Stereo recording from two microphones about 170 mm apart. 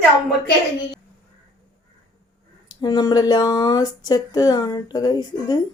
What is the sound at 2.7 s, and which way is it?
Speech, 25° left (ahead or behind).